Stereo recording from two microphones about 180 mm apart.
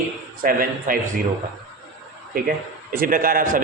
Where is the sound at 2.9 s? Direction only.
55° right (ahead or behind).